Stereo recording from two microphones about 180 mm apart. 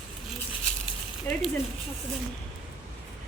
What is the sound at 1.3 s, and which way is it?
Speech, 15° left (ahead or behind).